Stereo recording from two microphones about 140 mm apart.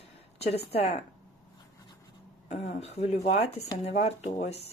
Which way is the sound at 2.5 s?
50° left (ahead or behind).